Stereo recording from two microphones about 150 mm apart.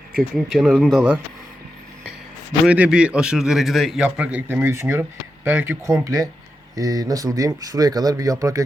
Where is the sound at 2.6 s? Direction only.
5° right (ahead or behind).